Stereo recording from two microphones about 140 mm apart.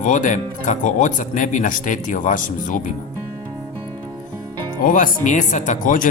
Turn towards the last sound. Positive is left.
turn(degrees=70)  # may be behind; listen again after turning